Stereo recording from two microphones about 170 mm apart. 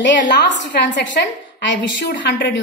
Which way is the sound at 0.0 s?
90° left.